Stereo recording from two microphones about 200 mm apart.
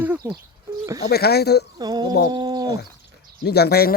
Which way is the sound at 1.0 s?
50° left (ahead or behind).